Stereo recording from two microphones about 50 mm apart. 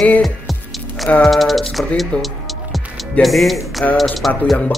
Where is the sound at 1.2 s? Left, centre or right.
Centre.